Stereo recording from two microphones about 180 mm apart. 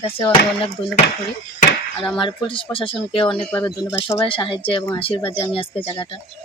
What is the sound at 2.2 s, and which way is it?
Speech, 30° left (ahead or behind).